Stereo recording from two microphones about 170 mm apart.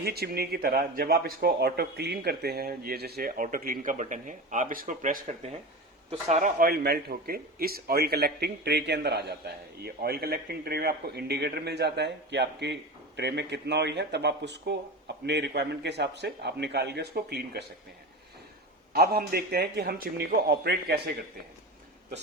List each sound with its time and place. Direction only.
0.0 s a man's voice: 65° right (ahead or behind)
9.8 s a man's voice: 65° right (ahead or behind)
18.9 s a man's voice: 65° right (ahead or behind)